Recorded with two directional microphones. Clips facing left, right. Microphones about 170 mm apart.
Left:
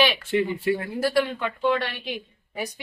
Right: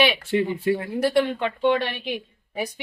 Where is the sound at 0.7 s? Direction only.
20° right (ahead or behind).